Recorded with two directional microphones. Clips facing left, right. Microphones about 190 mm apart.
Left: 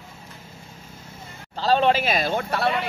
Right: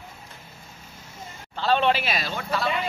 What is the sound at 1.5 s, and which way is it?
Speech, 40° left (ahead or behind).